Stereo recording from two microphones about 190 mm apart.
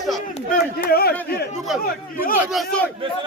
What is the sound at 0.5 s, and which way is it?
Speech, 50° left (ahead or behind).